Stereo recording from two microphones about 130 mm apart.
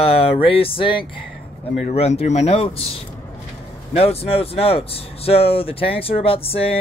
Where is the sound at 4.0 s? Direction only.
50° left (ahead or behind).